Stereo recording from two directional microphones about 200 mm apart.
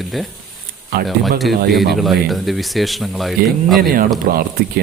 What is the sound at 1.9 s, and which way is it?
Speech, centre (ahead or behind).